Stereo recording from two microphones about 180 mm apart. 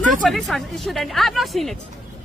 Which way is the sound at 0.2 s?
Centre (ahead or behind).